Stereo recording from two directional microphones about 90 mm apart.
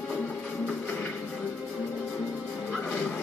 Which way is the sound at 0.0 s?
15° left (ahead or behind).